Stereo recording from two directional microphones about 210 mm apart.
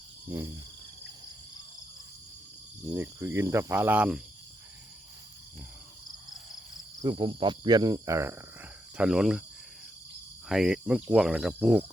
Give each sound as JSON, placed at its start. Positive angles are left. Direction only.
{"t": 0.3, "sound": "cricket", "side_deg": -10}
{"t": 2.8, "sound": "cricket", "side_deg": -10}
{"t": 7.0, "sound": "cricket", "side_deg": -20}
{"t": 10.5, "sound": "cricket", "side_deg": -5}